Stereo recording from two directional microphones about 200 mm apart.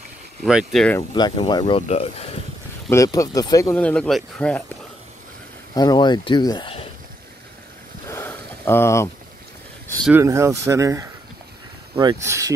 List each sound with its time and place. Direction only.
0.4 s speech: centre (ahead or behind)
0.9 s speech: 20° left (ahead or behind)
2.9 s speech: 15° left (ahead or behind)
5.8 s speech: 20° left (ahead or behind)
8.1 s a sound: 10° left (ahead or behind)
10.0 s speech: 10° right (ahead or behind)